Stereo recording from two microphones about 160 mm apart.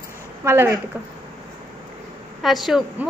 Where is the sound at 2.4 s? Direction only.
Centre (ahead or behind).